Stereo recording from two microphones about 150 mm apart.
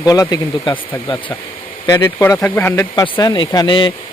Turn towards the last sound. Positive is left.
turn(degrees=30)  # may be behind; listen again after turning